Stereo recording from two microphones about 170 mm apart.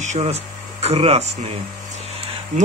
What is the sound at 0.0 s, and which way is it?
Speech, 40° right (ahead or behind).